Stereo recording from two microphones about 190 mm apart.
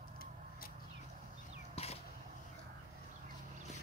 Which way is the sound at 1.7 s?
35° left (ahead or behind).